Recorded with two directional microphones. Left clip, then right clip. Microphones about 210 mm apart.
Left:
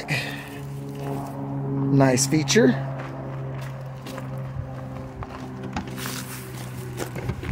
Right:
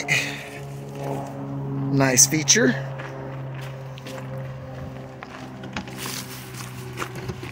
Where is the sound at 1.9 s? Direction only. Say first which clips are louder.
Right 2 dB; 20° left (ahead or behind).